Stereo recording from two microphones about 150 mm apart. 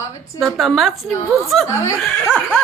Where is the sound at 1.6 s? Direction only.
20° left (ahead or behind).